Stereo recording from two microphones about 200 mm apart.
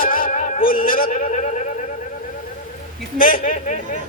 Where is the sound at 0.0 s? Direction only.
45° left (ahead or behind).